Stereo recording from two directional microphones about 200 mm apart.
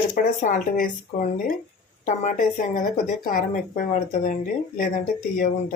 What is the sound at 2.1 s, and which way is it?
Speech, 40° left (ahead or behind).